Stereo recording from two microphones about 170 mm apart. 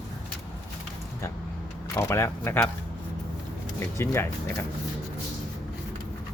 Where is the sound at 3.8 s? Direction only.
15° left (ahead or behind).